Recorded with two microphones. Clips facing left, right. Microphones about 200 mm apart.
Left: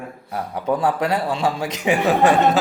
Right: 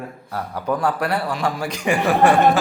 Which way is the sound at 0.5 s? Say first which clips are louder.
Left 2 dB; 20° left (ahead or behind).